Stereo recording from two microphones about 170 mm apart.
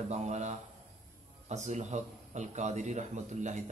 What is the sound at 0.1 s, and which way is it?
A man's voice, 40° right (ahead or behind).